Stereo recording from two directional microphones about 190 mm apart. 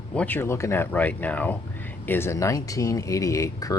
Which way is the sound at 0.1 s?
10° left (ahead or behind).